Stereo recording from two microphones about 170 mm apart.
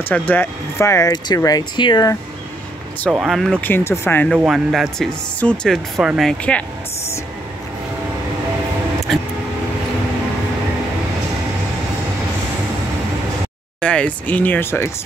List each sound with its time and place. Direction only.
0.1 s speech: 10° left (ahead or behind)
3.1 s speech: centre (ahead or behind)
3.6 s speech: 15° left (ahead or behind)
4.3 s speech: 5° right (ahead or behind)
13.7 s speech: 5° left (ahead or behind)